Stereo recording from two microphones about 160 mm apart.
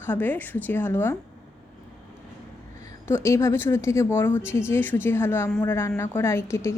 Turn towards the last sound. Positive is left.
turn(degrees=15)  # may be behind; listen again after turning